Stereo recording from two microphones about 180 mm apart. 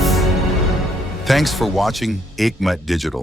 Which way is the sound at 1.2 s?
Centre (ahead or behind).